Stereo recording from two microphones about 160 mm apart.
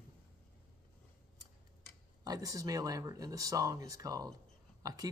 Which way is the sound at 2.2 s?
20° right (ahead or behind).